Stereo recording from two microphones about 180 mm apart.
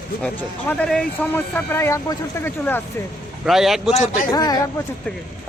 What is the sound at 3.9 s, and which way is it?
Speech, 40° left (ahead or behind).